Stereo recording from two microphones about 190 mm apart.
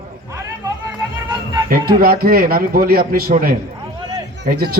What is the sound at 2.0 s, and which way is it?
A man's voice, 50° right (ahead or behind).